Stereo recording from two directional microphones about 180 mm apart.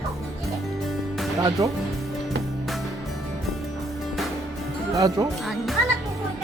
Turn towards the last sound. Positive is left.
turn(degrees=0)  # may be behind; listen again after turning